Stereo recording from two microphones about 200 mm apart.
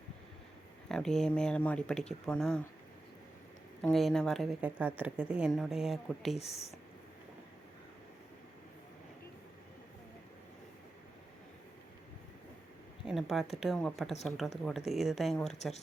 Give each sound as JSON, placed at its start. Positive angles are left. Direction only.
{"t": 0.9, "sound": "a woman's voice", "side_deg": 0}
{"t": 3.8, "sound": "a woman's voice", "side_deg": 0}
{"t": 6.3, "sound": "speech", "side_deg": 30}
{"t": 13.1, "sound": "a woman's voice", "side_deg": 0}